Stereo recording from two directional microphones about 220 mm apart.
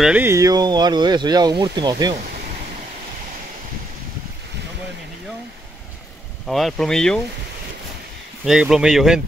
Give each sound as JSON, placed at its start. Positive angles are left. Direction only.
{"t": 0.0, "sound": "speech", "side_deg": -10}
{"t": 6.4, "sound": "speech", "side_deg": 0}
{"t": 8.5, "sound": "speech", "side_deg": -5}